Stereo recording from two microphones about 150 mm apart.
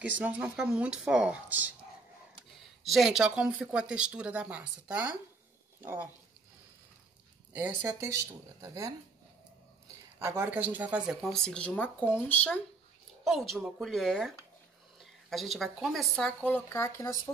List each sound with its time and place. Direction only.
0.0 s speech: 10° right (ahead or behind)
2.8 s speech: centre (ahead or behind)
8.0 s speech: 20° right (ahead or behind)
10.1 s speech: 15° right (ahead or behind); by 16.3 s 5° left (ahead or behind)
16.4 s speech: 15° left (ahead or behind)